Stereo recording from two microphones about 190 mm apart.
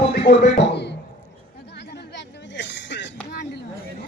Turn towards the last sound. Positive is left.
turn(degrees=65)  # may be behind; listen again after turning